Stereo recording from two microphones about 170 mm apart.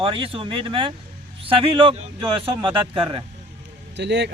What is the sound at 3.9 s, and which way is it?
Speech, 90° right.